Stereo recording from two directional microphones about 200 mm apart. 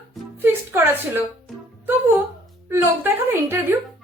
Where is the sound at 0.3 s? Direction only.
10° right (ahead or behind).